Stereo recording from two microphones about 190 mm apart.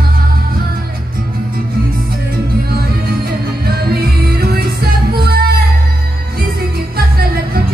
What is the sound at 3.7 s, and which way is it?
Music, 55° right (ahead or behind).